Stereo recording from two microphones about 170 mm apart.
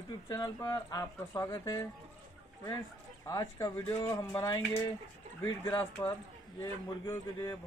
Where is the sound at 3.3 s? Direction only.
20° left (ahead or behind).